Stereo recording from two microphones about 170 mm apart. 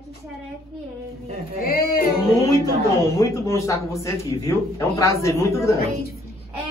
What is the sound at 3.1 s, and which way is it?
A man's voice, 15° left (ahead or behind).